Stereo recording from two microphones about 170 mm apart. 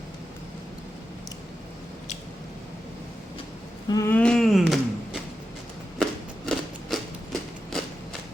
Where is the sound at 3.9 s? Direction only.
15° left (ahead or behind).